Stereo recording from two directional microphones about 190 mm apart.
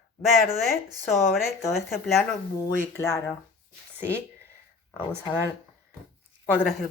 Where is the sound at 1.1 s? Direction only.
Centre (ahead or behind).